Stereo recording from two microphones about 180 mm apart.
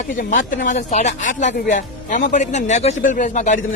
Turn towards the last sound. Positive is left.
turn(degrees=45)  # may be behind; listen again after turning